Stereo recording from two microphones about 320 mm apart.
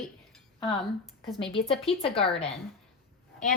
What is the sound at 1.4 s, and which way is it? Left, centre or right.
Speech, centre.